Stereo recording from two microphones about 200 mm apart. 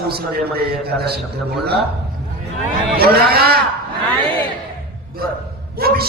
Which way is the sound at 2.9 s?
50° right (ahead or behind).